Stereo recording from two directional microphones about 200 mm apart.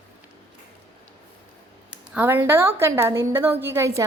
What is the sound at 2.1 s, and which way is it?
A woman's voice, 10° right (ahead or behind).